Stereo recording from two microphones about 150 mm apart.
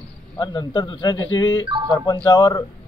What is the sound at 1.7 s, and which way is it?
Speech, 35° right (ahead or behind).